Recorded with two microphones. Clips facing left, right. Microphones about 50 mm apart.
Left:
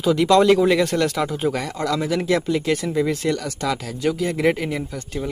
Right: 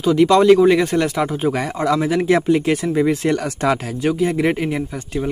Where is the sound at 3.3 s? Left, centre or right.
Right.